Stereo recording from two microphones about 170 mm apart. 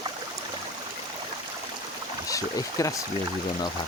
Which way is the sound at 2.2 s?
20° left (ahead or behind).